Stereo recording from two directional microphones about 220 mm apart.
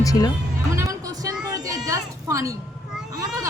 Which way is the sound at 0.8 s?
15° right (ahead or behind).